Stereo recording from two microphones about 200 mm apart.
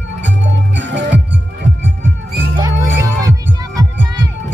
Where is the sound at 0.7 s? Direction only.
65° right (ahead or behind).